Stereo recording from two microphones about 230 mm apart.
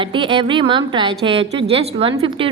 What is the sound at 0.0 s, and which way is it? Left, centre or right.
A woman's voice, right.